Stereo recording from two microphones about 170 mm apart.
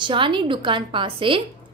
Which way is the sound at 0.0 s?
30° right (ahead or behind).